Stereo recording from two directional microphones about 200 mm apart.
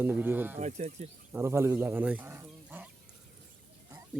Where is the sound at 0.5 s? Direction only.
35° right (ahead or behind).